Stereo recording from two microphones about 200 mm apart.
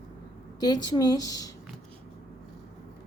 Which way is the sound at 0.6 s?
20° left (ahead or behind).